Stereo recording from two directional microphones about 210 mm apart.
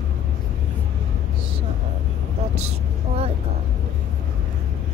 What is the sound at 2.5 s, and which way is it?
Vehicle, 30° right (ahead or behind).